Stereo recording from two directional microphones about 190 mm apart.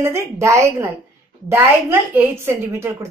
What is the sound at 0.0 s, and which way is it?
A woman's voice, 15° right (ahead or behind).